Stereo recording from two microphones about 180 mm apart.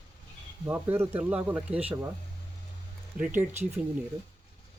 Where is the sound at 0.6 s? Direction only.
10° right (ahead or behind).